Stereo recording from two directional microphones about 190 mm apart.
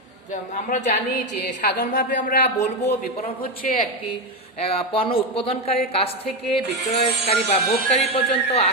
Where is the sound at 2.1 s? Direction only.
45° left (ahead or behind).